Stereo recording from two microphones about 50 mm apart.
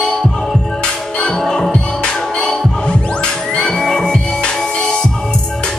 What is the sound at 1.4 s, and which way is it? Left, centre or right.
Music, centre.